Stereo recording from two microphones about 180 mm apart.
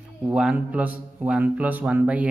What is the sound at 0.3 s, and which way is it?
A man's voice, 5° right (ahead or behind).